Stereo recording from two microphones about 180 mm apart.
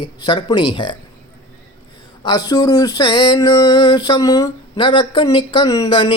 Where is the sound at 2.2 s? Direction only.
20° left (ahead or behind).